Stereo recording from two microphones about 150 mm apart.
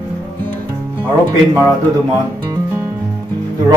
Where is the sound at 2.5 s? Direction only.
15° right (ahead or behind).